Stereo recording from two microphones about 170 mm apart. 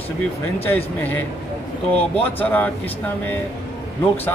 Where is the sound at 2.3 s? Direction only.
10° left (ahead or behind).